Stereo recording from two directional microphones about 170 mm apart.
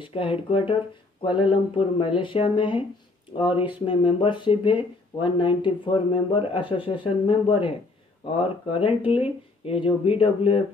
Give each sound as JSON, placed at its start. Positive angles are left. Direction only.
{"t": 0.0, "sound": "speech", "side_deg": 30}
{"t": 3.8, "sound": "speech", "side_deg": 30}